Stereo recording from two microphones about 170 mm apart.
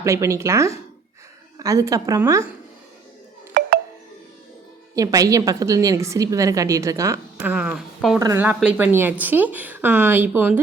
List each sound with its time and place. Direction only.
0.0 s a woman's voice: 15° right (ahead or behind)
4.9 s a woman's voice: 20° right (ahead or behind)
7.5 s speech: 5° right (ahead or behind)
8.2 s a woman's voice: 15° right (ahead or behind)